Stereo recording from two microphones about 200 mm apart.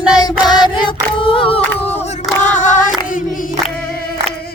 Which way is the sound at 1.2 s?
25° left (ahead or behind).